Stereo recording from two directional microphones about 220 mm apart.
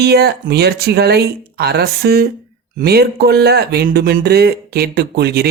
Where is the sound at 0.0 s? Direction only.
45° right (ahead or behind).